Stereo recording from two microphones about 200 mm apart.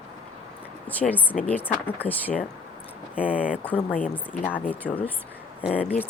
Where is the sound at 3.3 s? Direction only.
45° left (ahead or behind).